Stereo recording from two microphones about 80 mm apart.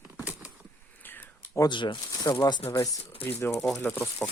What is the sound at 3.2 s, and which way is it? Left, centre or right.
Speech, left.